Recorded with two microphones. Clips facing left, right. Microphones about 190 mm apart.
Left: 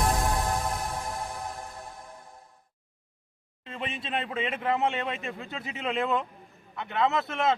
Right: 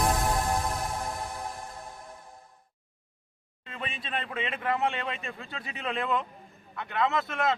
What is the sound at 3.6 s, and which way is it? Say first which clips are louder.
Speech: left 3 dB; 25° left (ahead or behind).